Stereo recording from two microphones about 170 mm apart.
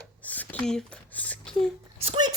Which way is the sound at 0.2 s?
10° left (ahead or behind).